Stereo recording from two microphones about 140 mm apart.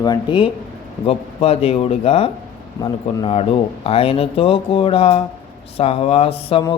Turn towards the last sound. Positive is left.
turn(degrees=45)  # may be behind; listen again after turning